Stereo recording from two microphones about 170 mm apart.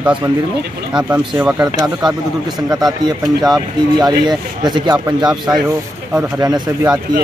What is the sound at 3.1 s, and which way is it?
Speech, 20° right (ahead or behind).